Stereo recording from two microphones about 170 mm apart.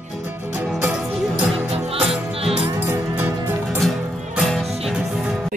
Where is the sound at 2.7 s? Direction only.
15° right (ahead or behind).